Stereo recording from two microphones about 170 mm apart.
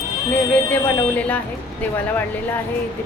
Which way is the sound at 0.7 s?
10° left (ahead or behind).